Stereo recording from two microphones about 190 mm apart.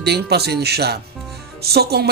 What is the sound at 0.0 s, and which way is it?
A man's voice, 60° right (ahead or behind).